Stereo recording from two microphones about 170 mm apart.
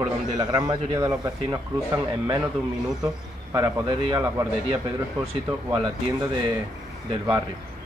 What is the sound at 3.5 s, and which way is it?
Speech, 25° right (ahead or behind).